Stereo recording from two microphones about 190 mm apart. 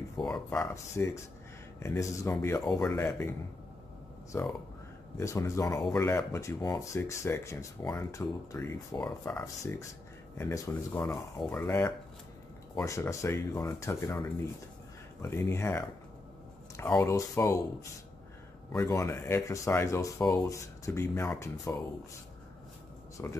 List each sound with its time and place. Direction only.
0.2 s speech: 5° left (ahead or behind)
4.3 s speech: 10° left (ahead or behind)
15.2 s speech: 15° left (ahead or behind)
18.7 s speech: 15° left (ahead or behind)
23.2 s speech: 15° left (ahead or behind)